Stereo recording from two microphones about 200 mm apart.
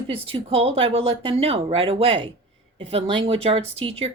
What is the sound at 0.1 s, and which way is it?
Speech, 30° right (ahead or behind).